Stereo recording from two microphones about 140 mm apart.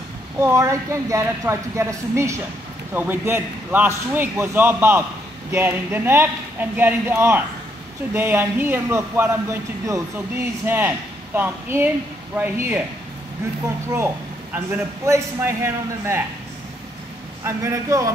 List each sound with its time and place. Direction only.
0.4 s a man's voice: 20° right (ahead or behind)
13.8 s a man's voice: 20° right (ahead or behind)
17.5 s speech: 20° right (ahead or behind)